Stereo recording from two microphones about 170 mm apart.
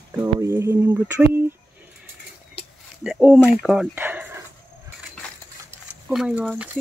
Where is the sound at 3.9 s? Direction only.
10° right (ahead or behind).